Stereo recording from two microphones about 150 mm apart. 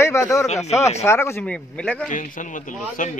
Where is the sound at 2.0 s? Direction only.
60° left (ahead or behind).